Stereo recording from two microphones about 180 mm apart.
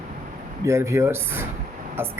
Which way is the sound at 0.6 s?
15° right (ahead or behind).